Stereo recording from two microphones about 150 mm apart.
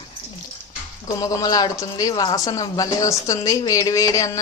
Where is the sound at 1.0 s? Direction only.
25° left (ahead or behind).